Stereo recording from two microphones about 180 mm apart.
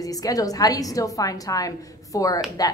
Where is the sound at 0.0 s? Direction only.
20° left (ahead or behind).